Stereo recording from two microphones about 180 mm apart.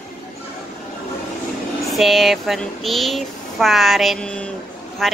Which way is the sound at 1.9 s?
Centre (ahead or behind).